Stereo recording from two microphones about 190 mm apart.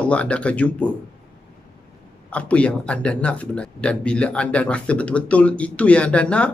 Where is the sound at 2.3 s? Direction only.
5° left (ahead or behind).